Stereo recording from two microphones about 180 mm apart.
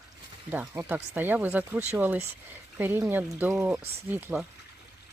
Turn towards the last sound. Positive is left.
turn(degrees=-10)  # may be behind; listen again after turning